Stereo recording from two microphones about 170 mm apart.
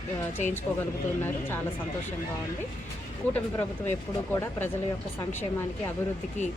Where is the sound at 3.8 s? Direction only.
10° left (ahead or behind).